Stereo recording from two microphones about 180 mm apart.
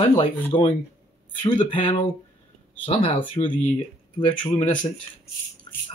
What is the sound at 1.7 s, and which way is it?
Speech, 30° left (ahead or behind).